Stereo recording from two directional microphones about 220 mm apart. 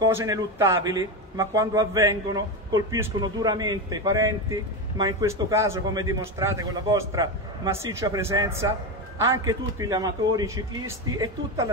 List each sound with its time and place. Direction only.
0.0 s a man's voice: 15° right (ahead or behind)